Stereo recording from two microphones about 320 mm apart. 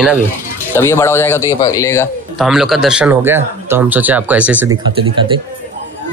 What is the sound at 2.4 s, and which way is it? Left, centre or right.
Speech, centre.